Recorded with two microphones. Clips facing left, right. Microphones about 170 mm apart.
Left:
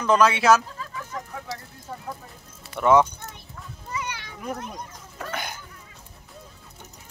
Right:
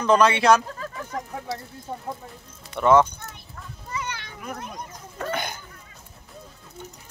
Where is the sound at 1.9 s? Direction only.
20° right (ahead or behind).